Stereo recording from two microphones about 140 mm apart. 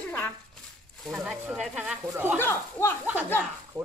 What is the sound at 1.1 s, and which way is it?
Speech, 5° right (ahead or behind).